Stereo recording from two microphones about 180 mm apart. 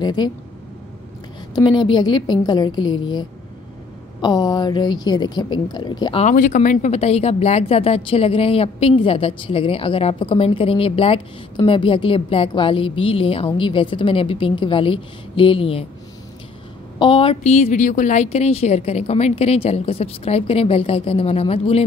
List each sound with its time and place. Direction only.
0.0 s a woman's voice: 25° left (ahead or behind)
1.5 s a woman's voice: 25° left (ahead or behind)
6.2 s a woman's voice: 45° left (ahead or behind)
17.0 s a woman's voice: 30° left (ahead or behind)